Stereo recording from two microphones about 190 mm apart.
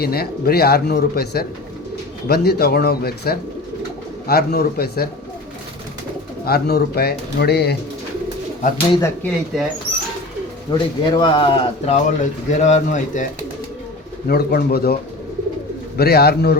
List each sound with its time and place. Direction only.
0.0 s speech: 55° left (ahead or behind)
6.4 s speech: 55° left (ahead or behind)
9.0 s speech: 15° left (ahead or behind)
10.7 s speech: 25° left (ahead or behind)
12.0 s speech: 40° left (ahead or behind)
14.3 s speech: 55° left (ahead or behind)
16.0 s speech: 55° left (ahead or behind)